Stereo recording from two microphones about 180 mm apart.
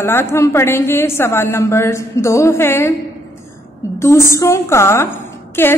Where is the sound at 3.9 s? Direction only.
15° left (ahead or behind).